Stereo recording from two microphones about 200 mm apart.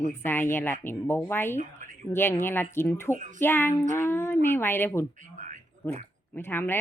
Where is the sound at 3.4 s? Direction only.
10° left (ahead or behind).